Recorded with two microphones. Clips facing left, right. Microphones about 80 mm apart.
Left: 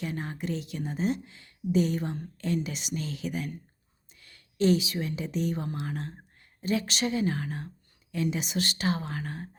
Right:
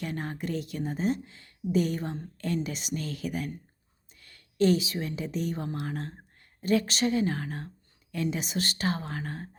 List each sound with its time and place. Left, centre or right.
0.0 s a woman's voice: right